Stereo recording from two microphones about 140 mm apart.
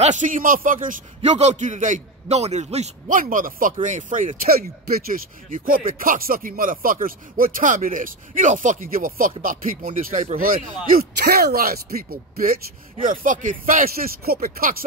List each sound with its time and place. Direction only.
0.0 s a man's voice: 60° right (ahead or behind)
3.2 s speech: 75° right (ahead or behind)
3.8 s speech: 65° right (ahead or behind)
10.3 s speech: 85° right
13.0 s speech: 70° right (ahead or behind); by 14.9 s 90° right